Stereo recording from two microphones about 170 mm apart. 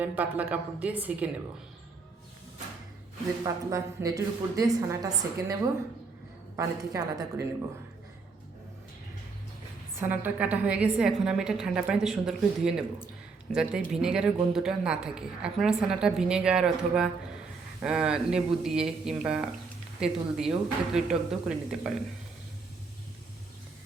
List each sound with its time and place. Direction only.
0.0 s a woman's voice: 10° right (ahead or behind)
3.4 s a woman's voice: 20° right (ahead or behind)
6.6 s a woman's voice: 20° right (ahead or behind)
10.0 s a woman's voice: 10° right (ahead or behind)